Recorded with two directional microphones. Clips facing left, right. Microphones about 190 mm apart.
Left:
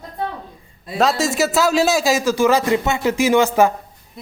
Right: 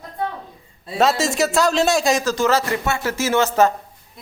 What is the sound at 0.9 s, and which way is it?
A man's voice, centre (ahead or behind).